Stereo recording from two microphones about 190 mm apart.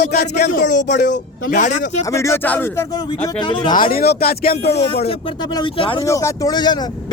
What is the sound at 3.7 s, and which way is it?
Speech, 45° left (ahead or behind).